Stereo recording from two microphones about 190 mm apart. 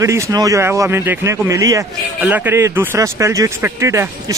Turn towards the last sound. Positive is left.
turn(degrees=-15)  # may be behind; listen again after turning